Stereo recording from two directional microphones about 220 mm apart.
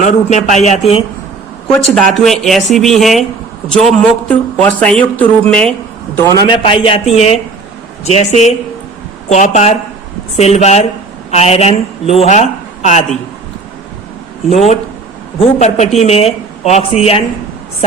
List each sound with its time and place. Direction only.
0.0 s a man's voice: 35° left (ahead or behind)
2.0 s a man's voice: centre (ahead or behind)
6.3 s a man's voice: 20° left (ahead or behind)
14.5 s a man's voice: 30° left (ahead or behind)